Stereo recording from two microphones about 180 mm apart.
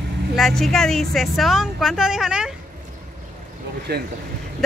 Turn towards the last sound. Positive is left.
turn(degrees=-65)  # may be behind; listen again after turning